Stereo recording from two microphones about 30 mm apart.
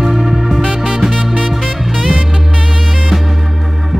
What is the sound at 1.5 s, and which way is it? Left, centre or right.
Music, centre.